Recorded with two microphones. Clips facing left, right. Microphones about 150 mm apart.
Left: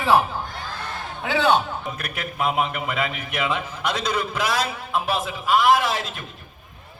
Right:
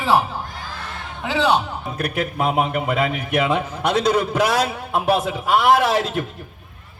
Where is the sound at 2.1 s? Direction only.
55° right (ahead or behind).